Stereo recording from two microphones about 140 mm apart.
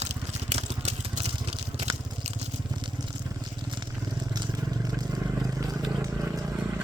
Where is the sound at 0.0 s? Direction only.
50° right (ahead or behind).